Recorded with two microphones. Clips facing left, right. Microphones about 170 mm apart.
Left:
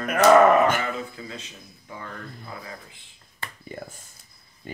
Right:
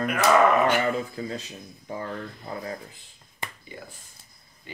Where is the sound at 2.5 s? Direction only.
35° right (ahead or behind).